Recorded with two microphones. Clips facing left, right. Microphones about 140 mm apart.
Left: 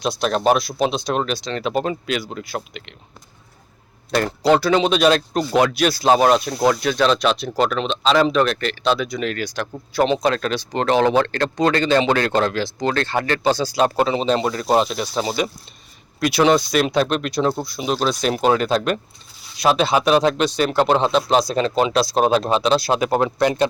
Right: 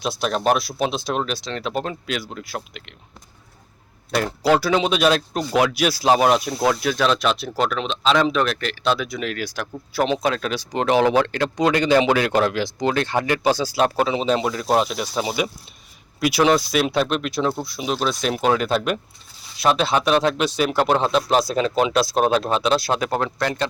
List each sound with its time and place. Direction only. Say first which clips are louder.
0.0 s speech: left 3 dB; 5° right (ahead or behind)
4.1 s speech: left 2 dB; 5° right (ahead or behind)
23.0 s speech: left 5 dB; 15° left (ahead or behind)